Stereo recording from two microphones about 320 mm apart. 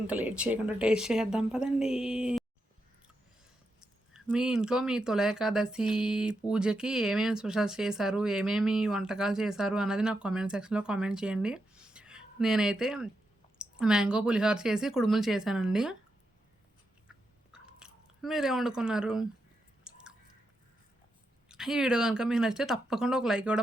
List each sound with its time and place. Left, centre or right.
0.1 s speech: centre
4.1 s speech: centre
17.1 s chewing: centre
19.9 s biting: centre
21.5 s speech: centre